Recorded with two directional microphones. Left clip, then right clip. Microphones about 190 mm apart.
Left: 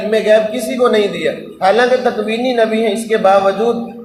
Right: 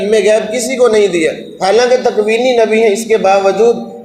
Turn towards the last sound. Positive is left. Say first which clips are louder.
# right 1 dB
turn(degrees=-50)  # may be behind; listen again after turning